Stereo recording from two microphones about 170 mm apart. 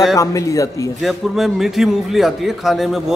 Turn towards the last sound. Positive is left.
turn(degrees=0)  # may be behind; listen again after turning